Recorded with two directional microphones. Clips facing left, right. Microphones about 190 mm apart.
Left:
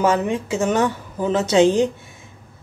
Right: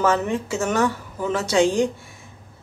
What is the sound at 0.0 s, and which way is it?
Speech, 15° left (ahead or behind).